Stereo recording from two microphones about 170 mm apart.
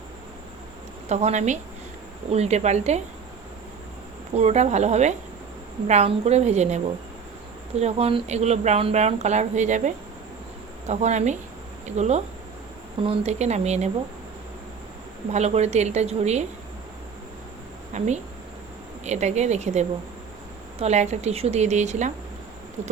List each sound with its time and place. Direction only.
1.0 s a woman's voice: 40° right (ahead or behind)
4.4 s speech: 40° right (ahead or behind)
15.3 s speech: 40° right (ahead or behind)
17.9 s a woman's voice: 40° right (ahead or behind)